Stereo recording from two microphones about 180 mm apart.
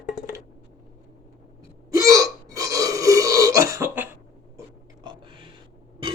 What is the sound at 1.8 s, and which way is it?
Burping, 15° right (ahead or behind).